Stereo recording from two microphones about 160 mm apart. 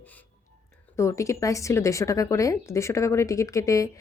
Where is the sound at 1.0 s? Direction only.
20° left (ahead or behind).